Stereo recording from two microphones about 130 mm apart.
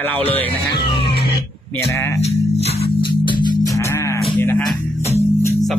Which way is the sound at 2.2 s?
55° left (ahead or behind).